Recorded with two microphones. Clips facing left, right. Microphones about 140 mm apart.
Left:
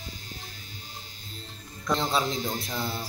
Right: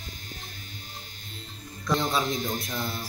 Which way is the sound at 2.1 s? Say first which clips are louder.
Even; 30° left (ahead or behind).